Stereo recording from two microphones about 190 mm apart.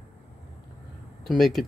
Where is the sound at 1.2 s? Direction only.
Centre (ahead or behind).